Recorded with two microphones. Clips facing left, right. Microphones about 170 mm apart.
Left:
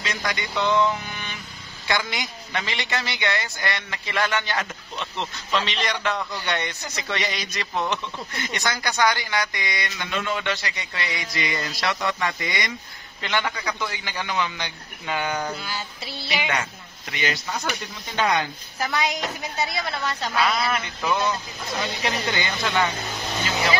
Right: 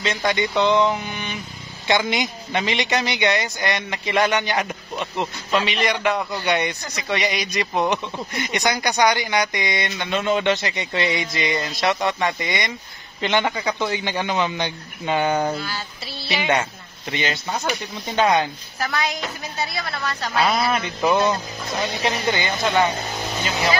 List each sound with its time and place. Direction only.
0.0 s a man's voice: 25° right (ahead or behind)
15.6 s music: 15° left (ahead or behind)
17.1 s a man's voice: 25° right (ahead or behind)
18.8 s a woman's voice: 15° left (ahead or behind)
20.3 s a man's voice: 25° right (ahead or behind)